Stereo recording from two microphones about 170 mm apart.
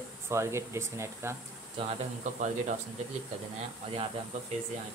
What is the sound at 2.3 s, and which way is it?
Speech, 45° right (ahead or behind).